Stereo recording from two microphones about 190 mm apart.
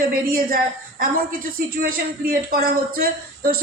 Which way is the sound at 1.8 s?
50° right (ahead or behind).